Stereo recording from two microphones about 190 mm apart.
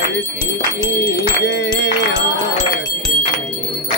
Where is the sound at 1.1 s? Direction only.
65° left (ahead or behind).